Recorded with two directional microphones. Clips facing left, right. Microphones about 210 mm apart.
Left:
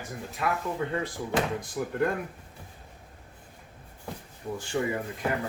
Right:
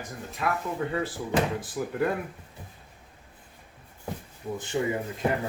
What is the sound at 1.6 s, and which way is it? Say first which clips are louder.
Speech: even; 5° right (ahead or behind).